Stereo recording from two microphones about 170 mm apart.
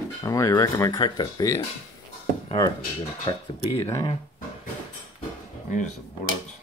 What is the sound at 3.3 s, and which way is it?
Speech, 25° left (ahead or behind).